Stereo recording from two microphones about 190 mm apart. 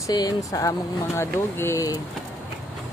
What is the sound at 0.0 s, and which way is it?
Speech, 20° left (ahead or behind).